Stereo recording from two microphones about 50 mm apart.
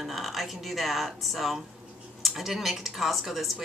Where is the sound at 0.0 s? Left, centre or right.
Centre.